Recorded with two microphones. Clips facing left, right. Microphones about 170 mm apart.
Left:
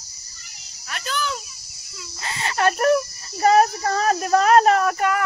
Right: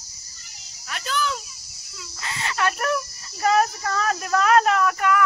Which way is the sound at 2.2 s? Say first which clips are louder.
Left 3 dB; 35° left (ahead or behind).